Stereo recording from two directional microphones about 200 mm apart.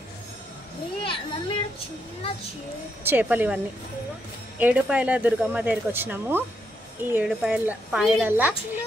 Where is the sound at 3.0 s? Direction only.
10° right (ahead or behind).